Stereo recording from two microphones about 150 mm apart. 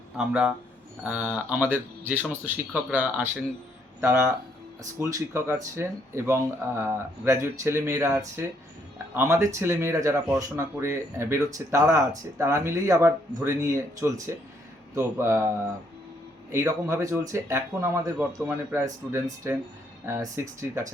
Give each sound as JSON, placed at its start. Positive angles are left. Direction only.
{"t": 0.2, "sound": "speech", "side_deg": -5}
{"t": 16.5, "sound": "speech", "side_deg": -20}